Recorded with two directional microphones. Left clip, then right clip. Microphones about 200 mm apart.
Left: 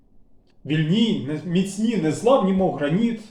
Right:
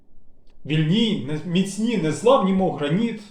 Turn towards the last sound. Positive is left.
turn(degrees=5)  # may be behind; listen again after turning